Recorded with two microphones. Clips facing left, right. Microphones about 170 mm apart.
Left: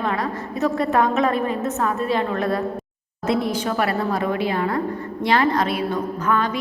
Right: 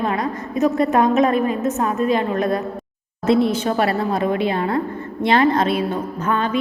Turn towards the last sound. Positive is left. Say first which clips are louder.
# right 1 dB
turn(degrees=-25)  # may be behind; listen again after turning